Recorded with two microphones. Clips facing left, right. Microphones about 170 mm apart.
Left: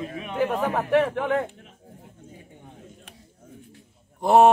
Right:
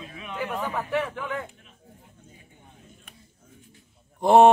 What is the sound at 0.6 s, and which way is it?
Speech, 55° left (ahead or behind).